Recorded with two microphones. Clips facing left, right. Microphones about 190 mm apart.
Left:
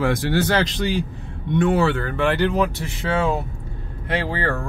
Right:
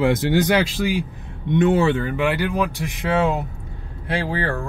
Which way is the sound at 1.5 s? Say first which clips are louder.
Right 2 dB; 20° right (ahead or behind).